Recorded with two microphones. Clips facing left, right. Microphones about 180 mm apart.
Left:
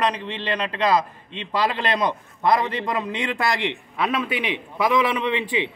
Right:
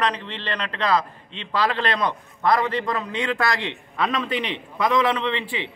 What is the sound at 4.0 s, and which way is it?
A man's voice, 10° left (ahead or behind).